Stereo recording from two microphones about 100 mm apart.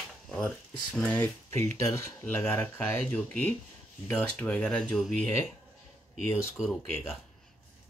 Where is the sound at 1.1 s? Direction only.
20° left (ahead or behind); by 5.3 s 5° left (ahead or behind).